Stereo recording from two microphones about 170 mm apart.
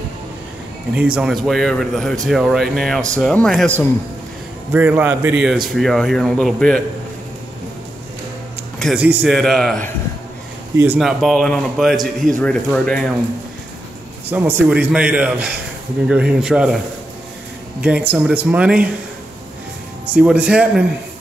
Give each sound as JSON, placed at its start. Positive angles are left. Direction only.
{"t": 0.9, "sound": "speech", "side_deg": -5}
{"t": 4.7, "sound": "a man's voice", "side_deg": -10}
{"t": 8.7, "sound": "a sound", "side_deg": 0}
{"t": 9.0, "sound": "speech", "side_deg": -10}
{"t": 11.0, "sound": "speech", "side_deg": 0}
{"t": 14.3, "sound": "a man's voice", "side_deg": -10}
{"t": 17.8, "sound": "a man's voice", "side_deg": -10}
{"t": 20.2, "sound": "speech", "side_deg": -5}